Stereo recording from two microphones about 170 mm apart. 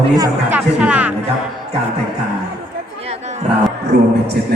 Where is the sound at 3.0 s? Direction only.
40° right (ahead or behind).